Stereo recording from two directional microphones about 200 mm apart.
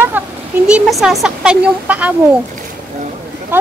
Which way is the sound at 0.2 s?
10° right (ahead or behind).